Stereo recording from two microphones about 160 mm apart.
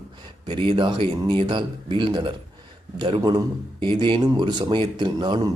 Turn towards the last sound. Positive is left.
turn(degrees=-30)  # may be behind; listen again after turning